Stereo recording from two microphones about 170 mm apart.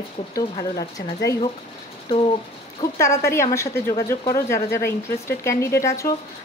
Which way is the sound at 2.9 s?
15° left (ahead or behind).